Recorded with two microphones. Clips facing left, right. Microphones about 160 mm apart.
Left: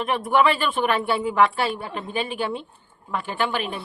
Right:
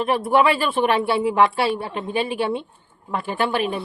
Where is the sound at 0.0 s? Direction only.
35° right (ahead or behind).